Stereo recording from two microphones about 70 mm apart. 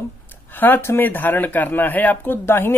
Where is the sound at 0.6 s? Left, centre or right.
Left.